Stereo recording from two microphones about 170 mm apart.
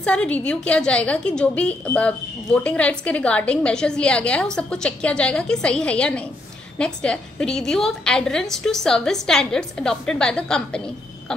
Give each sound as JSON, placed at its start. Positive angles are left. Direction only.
{"t": 0.0, "sound": "a woman's voice", "side_deg": 5}